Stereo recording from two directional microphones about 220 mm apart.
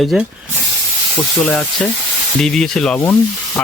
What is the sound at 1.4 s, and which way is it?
Speech, 5° left (ahead or behind).